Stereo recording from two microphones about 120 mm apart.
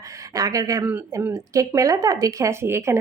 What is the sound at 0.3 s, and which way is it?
Speech, 30° right (ahead or behind).